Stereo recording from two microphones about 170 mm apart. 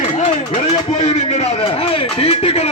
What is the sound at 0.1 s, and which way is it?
A man's voice, 40° left (ahead or behind).